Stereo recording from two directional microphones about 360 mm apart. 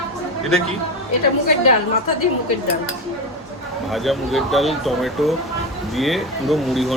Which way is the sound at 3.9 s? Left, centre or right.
Centre.